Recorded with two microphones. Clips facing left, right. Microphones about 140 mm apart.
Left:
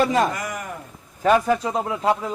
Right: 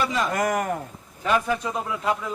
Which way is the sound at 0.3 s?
50° right (ahead or behind).